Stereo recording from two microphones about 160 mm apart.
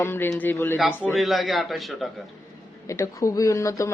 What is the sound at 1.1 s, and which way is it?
Speech, centre (ahead or behind).